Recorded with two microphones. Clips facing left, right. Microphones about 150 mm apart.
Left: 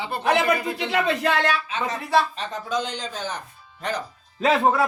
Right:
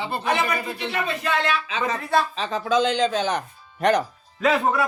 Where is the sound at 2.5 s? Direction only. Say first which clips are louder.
Right 8 dB; 90° right; by 4.1 s 75° right (ahead or behind).